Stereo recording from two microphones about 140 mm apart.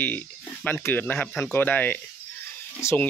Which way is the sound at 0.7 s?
15° left (ahead or behind).